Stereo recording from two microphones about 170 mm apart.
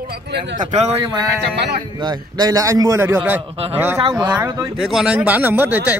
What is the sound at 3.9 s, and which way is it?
Speech, 20° right (ahead or behind).